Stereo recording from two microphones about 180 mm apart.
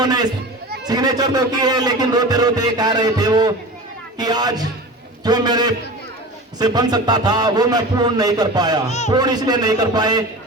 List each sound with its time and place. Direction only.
0.0 s a man's voice: 20° right (ahead or behind)